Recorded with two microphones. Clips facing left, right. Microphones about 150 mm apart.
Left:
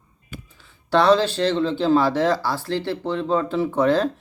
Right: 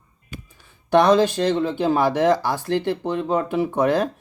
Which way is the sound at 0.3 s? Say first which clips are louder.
Even; 15° right (ahead or behind).